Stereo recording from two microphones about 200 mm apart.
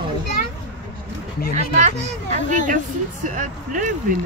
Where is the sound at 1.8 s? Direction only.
35° right (ahead or behind).